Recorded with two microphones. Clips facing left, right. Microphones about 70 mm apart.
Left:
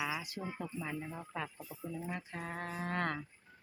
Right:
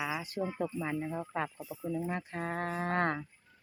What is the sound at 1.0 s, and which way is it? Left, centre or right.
Speech, right.